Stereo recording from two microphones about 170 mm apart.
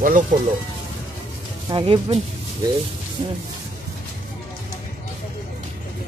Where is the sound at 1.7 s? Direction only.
30° right (ahead or behind).